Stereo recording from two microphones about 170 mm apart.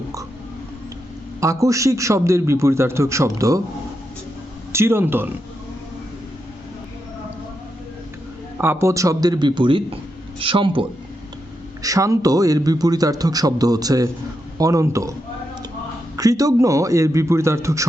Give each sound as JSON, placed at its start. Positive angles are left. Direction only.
{"t": 1.4, "sound": "a man's voice", "side_deg": -20}
{"t": 4.7, "sound": "speech", "side_deg": -15}
{"t": 8.5, "sound": "a man's voice", "side_deg": -15}
{"t": 11.8, "sound": "a man's voice", "side_deg": -20}
{"t": 16.1, "sound": "a man's voice", "side_deg": -20}